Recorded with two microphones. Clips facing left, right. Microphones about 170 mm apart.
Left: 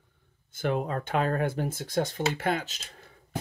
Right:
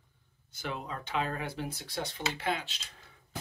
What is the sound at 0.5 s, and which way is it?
Speech, 50° left (ahead or behind).